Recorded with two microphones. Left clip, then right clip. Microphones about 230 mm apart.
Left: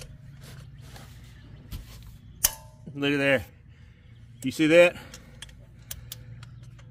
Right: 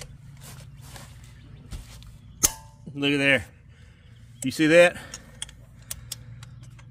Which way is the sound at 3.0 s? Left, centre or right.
Centre.